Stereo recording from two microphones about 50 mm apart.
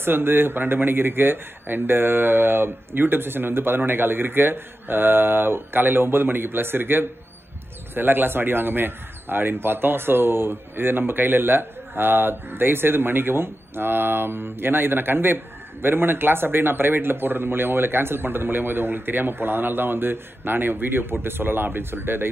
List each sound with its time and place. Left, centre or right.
0.0 s a man's voice: right